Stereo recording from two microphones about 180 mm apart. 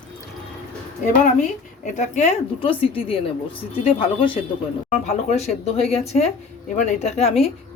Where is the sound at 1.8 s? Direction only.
40° left (ahead or behind).